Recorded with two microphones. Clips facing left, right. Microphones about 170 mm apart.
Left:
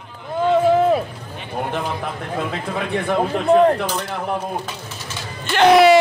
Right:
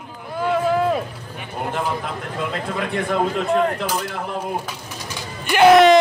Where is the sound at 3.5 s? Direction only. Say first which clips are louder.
Left 8 dB; 35° left (ahead or behind).